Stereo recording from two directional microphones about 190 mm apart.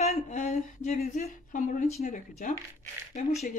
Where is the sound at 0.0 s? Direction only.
35° left (ahead or behind).